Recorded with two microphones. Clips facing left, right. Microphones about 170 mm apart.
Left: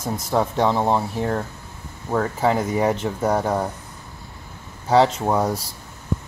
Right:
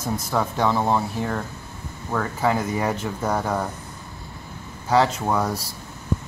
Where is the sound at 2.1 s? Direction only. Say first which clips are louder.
Left 3 dB; 25° left (ahead or behind).